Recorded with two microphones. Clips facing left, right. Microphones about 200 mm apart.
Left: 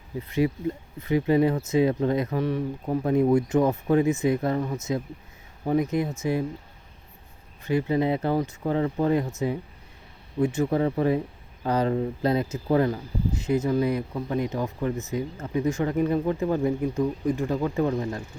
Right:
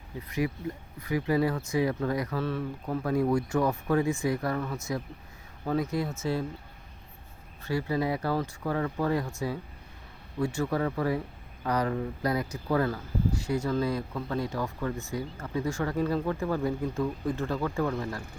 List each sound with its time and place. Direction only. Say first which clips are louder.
0.2 s speech: left 6 dB; 25° left (ahead or behind)
7.6 s speech: left 5 dB; 20° left (ahead or behind)